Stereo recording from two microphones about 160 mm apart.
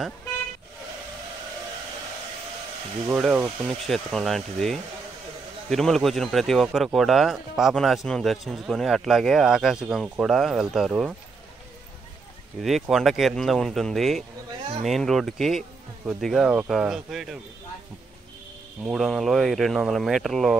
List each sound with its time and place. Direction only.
3.1 s speech: 5° right (ahead or behind)
12.6 s speech: centre (ahead or behind)
18.9 s speech: centre (ahead or behind)